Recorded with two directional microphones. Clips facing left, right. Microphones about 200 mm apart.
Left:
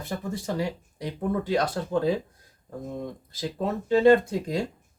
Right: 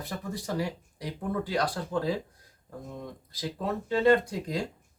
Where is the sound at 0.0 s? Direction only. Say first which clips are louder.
Left 4 dB; 25° left (ahead or behind).